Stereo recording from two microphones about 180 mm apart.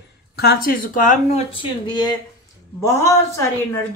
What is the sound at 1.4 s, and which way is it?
A woman's voice, 25° left (ahead or behind).